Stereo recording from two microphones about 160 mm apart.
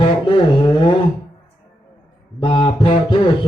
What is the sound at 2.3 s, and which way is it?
Speech, 30° left (ahead or behind).